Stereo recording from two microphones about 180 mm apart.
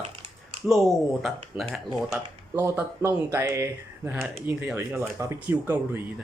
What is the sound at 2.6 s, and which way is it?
Speech, 15° right (ahead or behind).